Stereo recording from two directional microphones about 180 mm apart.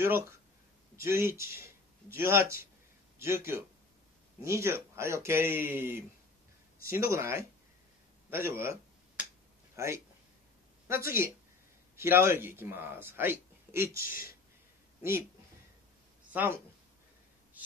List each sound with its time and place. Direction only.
1.0 s speech: 15° right (ahead or behind)
6.8 s speech: 55° left (ahead or behind)
7.1 s speech: 15° right (ahead or behind)
8.3 s a sound: 15° right (ahead or behind)
9.8 s speech: 15° right (ahead or behind)
11.1 s speech: 15° right (ahead or behind)
13.9 s speech: 55° left (ahead or behind)
15.0 s speech: 15° right (ahead or behind)
16.3 s speech: 10° right (ahead or behind)